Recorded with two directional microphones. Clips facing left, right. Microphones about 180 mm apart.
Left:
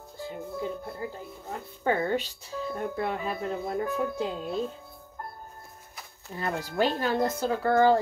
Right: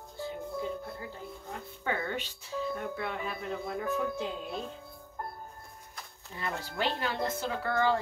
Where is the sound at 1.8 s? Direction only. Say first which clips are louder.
Left 8 dB; 40° left (ahead or behind).